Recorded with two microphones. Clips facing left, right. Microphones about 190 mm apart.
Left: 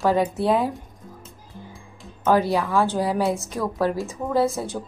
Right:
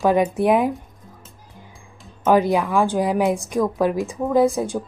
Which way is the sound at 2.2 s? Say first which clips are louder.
Right 3 dB; 15° right (ahead or behind).